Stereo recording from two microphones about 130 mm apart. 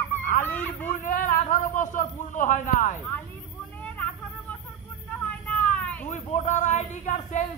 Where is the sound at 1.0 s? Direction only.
90° left.